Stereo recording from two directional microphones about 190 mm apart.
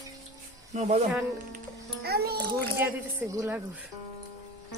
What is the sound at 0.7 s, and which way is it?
Speech, 35° right (ahead or behind).